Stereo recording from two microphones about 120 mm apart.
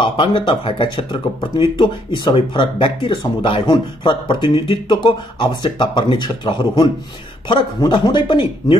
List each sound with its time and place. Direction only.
0.0 s speech: 45° left (ahead or behind)